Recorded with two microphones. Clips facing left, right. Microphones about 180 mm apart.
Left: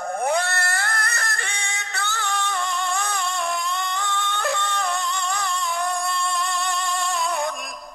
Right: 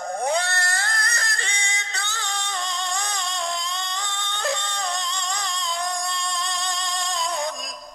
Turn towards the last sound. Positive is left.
turn(degrees=-20)  # may be behind; listen again after turning